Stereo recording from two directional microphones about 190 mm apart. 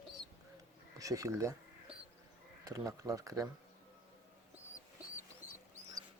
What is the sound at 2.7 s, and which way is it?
Speech, 20° right (ahead or behind).